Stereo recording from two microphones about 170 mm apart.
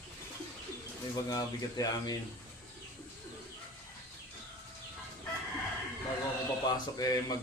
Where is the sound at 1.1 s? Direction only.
20° left (ahead or behind).